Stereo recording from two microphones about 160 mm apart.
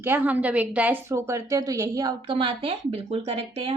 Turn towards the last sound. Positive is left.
turn(degrees=-35)  # may be behind; listen again after turning